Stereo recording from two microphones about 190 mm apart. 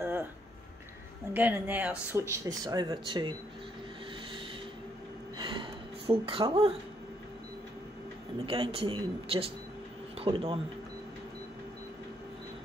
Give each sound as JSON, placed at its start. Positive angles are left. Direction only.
{"t": 1.3, "sound": "speech", "side_deg": -10}
{"t": 5.4, "sound": "a sound", "side_deg": -25}
{"t": 8.5, "sound": "speech", "side_deg": -30}